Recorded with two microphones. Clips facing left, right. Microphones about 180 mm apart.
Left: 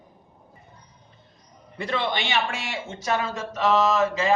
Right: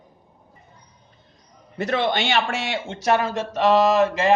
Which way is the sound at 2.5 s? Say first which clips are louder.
Right 5 dB; 70° right (ahead or behind).